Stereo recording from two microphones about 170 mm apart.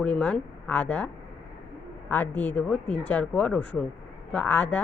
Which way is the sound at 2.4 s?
10° left (ahead or behind).